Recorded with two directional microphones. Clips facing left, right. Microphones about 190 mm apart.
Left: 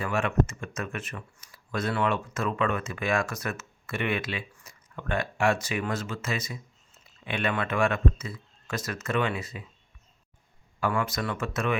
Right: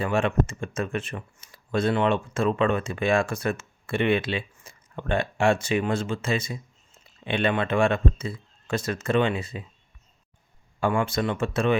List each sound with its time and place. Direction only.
0.0 s speech: 30° right (ahead or behind)
10.8 s speech: 30° right (ahead or behind)